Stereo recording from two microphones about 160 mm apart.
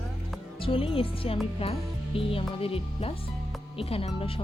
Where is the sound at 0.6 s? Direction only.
35° left (ahead or behind).